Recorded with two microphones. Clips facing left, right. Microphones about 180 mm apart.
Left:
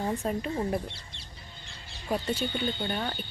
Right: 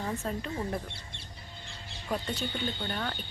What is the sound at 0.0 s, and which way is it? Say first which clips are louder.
Speech: left 4 dB; 20° left (ahead or behind).